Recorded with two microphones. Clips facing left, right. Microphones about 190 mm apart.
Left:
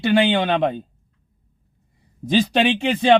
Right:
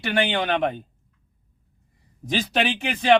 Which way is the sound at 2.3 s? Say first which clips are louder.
Left 6 dB; 25° left (ahead or behind).